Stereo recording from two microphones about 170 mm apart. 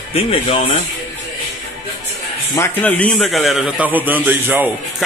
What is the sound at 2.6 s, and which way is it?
A man's voice, 10° left (ahead or behind).